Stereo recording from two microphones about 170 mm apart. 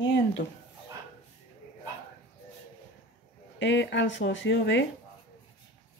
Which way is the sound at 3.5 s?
90° left.